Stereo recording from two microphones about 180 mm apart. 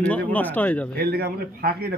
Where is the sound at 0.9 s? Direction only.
60° right (ahead or behind).